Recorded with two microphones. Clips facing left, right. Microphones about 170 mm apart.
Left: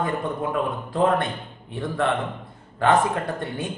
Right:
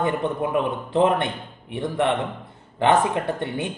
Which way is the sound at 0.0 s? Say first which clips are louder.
Right 2 dB; 20° right (ahead or behind).